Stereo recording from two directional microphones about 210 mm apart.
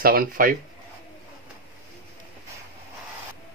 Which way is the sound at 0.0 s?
45° right (ahead or behind).